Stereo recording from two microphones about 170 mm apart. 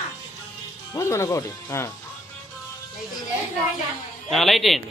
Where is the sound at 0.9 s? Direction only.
15° left (ahead or behind).